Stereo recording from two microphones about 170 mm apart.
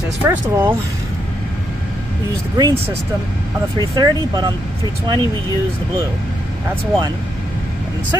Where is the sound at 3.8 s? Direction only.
25° right (ahead or behind).